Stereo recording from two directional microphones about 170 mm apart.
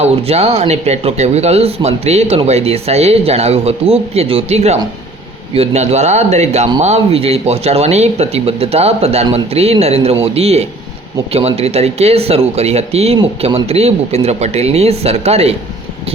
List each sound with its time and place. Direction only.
0.0 s speech: 40° right (ahead or behind)